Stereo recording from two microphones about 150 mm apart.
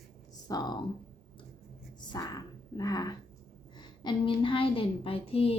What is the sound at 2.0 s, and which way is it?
A woman's voice, 30° left (ahead or behind).